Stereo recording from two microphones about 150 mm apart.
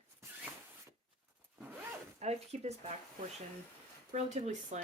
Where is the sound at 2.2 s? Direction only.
45° right (ahead or behind).